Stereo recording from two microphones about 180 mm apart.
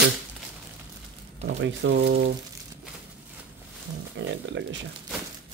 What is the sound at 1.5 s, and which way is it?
Speech, 85° right.